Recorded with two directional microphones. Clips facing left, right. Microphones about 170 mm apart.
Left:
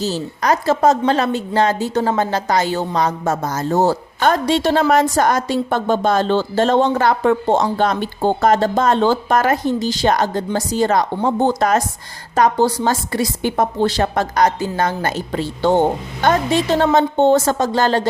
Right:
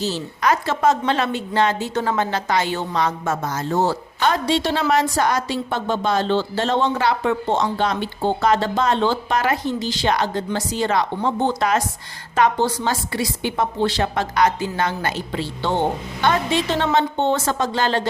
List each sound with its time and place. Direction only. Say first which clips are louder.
0.0 s a woman's voice: left 2 dB; 40° left (ahead or behind)